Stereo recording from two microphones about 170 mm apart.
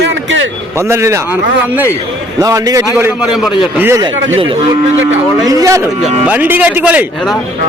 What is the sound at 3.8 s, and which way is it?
Speech, 15° right (ahead or behind).